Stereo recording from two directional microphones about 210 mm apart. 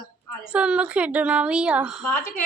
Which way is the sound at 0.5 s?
5° right (ahead or behind).